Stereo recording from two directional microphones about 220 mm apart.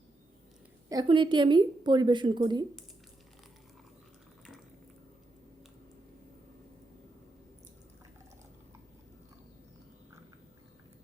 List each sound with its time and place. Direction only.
0.9 s a woman's voice: 20° right (ahead or behind)